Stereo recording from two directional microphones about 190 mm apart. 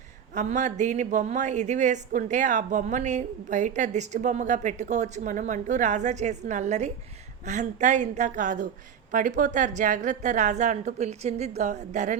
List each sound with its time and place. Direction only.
0.3 s speech: 40° right (ahead or behind)